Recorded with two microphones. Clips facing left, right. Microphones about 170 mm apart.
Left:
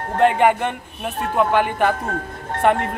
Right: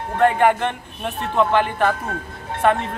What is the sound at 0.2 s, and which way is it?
Speech, 15° left (ahead or behind).